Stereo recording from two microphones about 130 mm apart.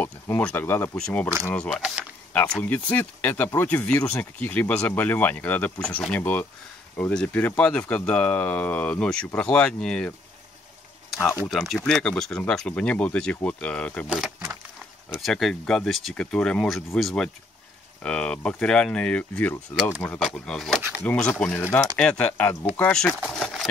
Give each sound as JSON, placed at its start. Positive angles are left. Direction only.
{"t": 0.0, "sound": "speech", "side_deg": 15}
{"t": 0.9, "sound": "speech", "side_deg": 5}
{"t": 11.4, "sound": "speech", "side_deg": 0}
{"t": 14.0, "sound": "speech", "side_deg": -5}
{"t": 19.7, "sound": "speech", "side_deg": -5}
{"t": 21.0, "sound": "speech", "side_deg": 15}
{"t": 21.5, "sound": "speech", "side_deg": 20}
{"t": 21.9, "sound": "speech", "side_deg": 10}
{"t": 23.3, "sound": "a sound", "side_deg": 5}